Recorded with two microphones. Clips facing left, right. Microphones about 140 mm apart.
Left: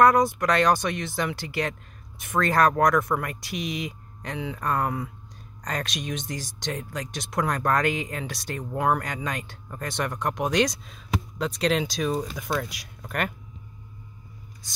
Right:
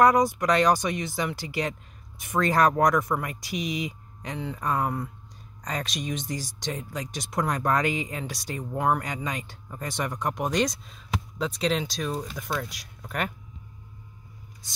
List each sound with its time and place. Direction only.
0.0 s speech: 15° right (ahead or behind)
8.7 s speech: centre (ahead or behind)
9.0 s speech: 10° right (ahead or behind)
10.5 s speech: 80° left
11.3 s speech: centre (ahead or behind)